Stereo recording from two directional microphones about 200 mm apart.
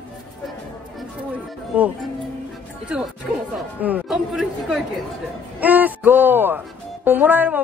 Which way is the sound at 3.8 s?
10° right (ahead or behind).